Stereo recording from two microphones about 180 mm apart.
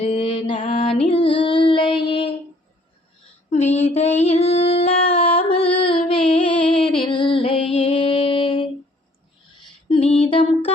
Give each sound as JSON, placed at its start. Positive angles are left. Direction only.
{"t": 0.0, "sound": "mantra", "side_deg": 35}
{"t": 0.5, "sound": "music", "side_deg": 40}
{"t": 3.5, "sound": "a sound", "side_deg": 40}
{"t": 3.9, "sound": "music", "side_deg": 35}
{"t": 6.5, "sound": "music", "side_deg": 5}
{"t": 6.8, "sound": "music", "side_deg": 30}
{"t": 9.9, "sound": "mantra", "side_deg": 35}